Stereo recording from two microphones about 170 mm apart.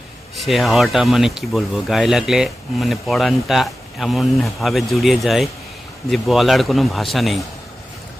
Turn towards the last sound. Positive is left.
turn(degrees=0)  # may be behind; listen again after turning